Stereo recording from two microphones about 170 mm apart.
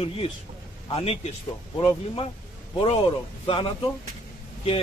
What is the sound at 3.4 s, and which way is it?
Speech, 30° left (ahead or behind).